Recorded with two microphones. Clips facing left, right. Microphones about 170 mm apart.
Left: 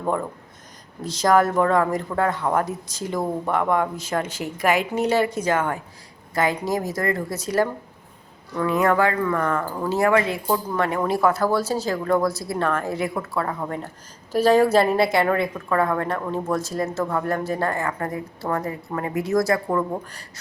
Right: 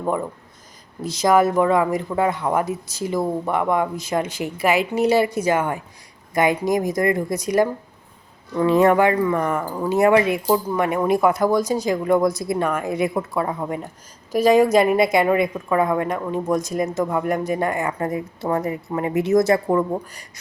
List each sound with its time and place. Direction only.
0.0 s a woman's voice: 5° right (ahead or behind)
8.5 s a woman's voice: 25° right (ahead or behind)
19.9 s a woman's voice: 10° right (ahead or behind)